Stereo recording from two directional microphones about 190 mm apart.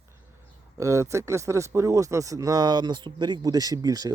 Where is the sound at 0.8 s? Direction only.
15° right (ahead or behind).